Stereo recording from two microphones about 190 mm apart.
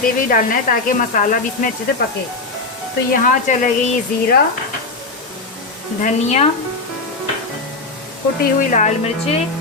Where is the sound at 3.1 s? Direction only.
45° left (ahead or behind).